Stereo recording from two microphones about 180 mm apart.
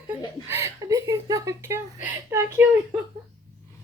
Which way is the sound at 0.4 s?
15° right (ahead or behind).